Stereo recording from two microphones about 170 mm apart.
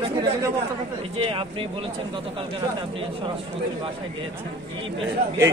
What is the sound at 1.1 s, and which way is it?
Speech, 35° right (ahead or behind).